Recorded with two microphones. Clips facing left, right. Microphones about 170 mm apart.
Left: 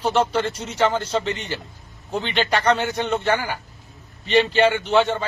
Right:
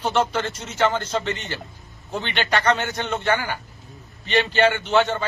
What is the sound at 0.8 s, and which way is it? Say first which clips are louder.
A man's voice: left 1 dB; centre (ahead or behind).